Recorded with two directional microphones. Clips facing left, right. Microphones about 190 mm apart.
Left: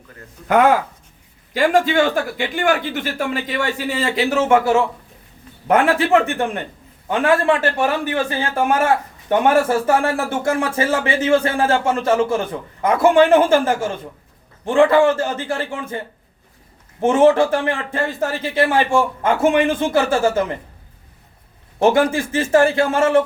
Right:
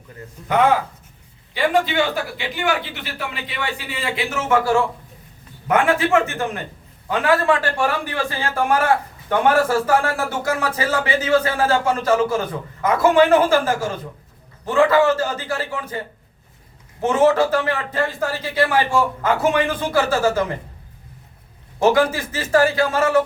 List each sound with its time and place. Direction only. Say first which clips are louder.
1.5 s a man's voice: left 3 dB; 45° left (ahead or behind); by 4.8 s 25° left (ahead or behind)
5.6 s a man's voice: left 2 dB; 35° left (ahead or behind)
17.0 s a man's voice: left 3 dB; 25° left (ahead or behind)
21.8 s a man's voice: left 1 dB; 25° left (ahead or behind)